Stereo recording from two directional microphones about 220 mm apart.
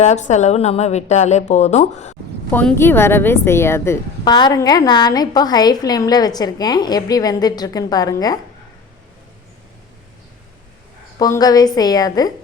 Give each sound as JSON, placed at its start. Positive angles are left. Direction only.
{"t": 0.0, "sound": "a woman's voice", "side_deg": 30}
{"t": 2.5, "sound": "speech", "side_deg": 10}
{"t": 11.2, "sound": "speech", "side_deg": 15}